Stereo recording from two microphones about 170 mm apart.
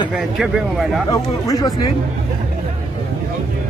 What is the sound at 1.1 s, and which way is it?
Speech, 20° left (ahead or behind).